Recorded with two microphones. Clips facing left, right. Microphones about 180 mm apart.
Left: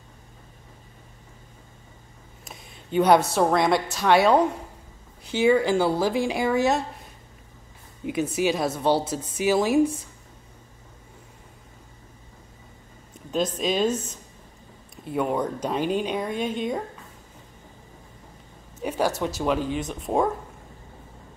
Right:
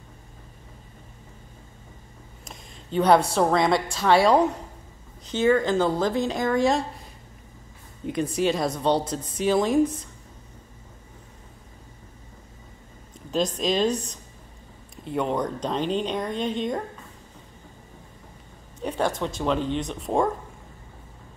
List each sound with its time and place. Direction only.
2.4 s a sound: 5° left (ahead or behind)
3.3 s a woman's voice: 5° left (ahead or behind)
5.2 s speech: 10° left (ahead or behind)
8.0 s a woman's voice: 5° left (ahead or behind)
13.6 s a woman's voice: 5° left (ahead or behind)
18.8 s a woman's voice: 5° left (ahead or behind)